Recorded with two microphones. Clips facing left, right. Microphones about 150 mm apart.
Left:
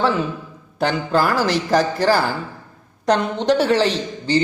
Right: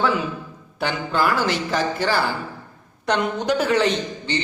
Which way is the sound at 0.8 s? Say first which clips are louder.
Left 4 dB; 40° left (ahead or behind).